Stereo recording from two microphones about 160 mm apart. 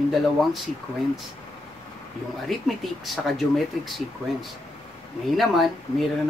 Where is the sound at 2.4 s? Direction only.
Centre (ahead or behind).